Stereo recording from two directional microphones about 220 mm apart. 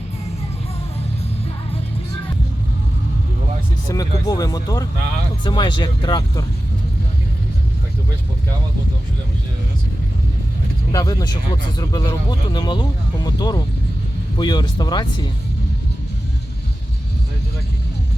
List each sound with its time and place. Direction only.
3.8 s speech: 15° left (ahead or behind)
10.9 s speech: 15° left (ahead or behind)